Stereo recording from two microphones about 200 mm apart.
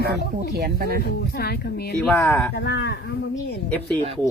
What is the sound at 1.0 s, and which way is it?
Speech, 50° left (ahead or behind).